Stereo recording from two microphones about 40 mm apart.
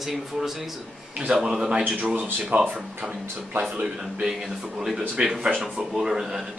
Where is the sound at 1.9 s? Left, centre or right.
Right.